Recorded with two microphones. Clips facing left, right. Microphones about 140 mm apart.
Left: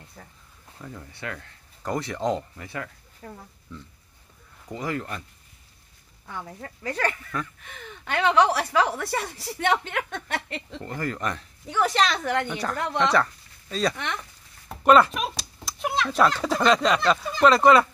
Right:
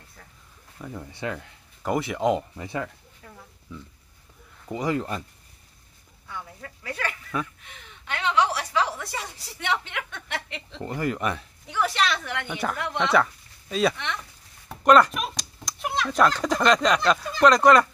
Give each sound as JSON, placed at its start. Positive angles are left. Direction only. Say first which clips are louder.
{"t": 0.7, "sound": "speech", "louder": "right 4 dB", "side_deg": -15}
{"t": 2.6, "sound": "speech", "louder": "right 4 dB", "side_deg": -20}
{"t": 3.2, "sound": "a woman's voice", "louder": "left 7 dB", "side_deg": 45}
{"t": 3.7, "sound": "speech", "louder": "right 1 dB", "side_deg": -10}
{"t": 4.7, "sound": "speech", "louder": "right 4 dB", "side_deg": -20}
{"t": 6.3, "sound": "a woman's voice", "louder": "left 2 dB", "side_deg": 40}
{"t": 10.8, "sound": "speech", "louder": "right 4 dB", "side_deg": -15}
{"t": 11.6, "sound": "a woman's voice", "louder": "left 2 dB", "side_deg": 40}
{"t": 12.4, "sound": "speech", "louder": "left 1 dB", "side_deg": -5}